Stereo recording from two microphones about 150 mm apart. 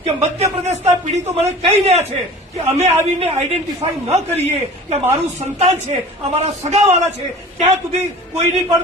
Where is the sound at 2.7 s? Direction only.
45° right (ahead or behind).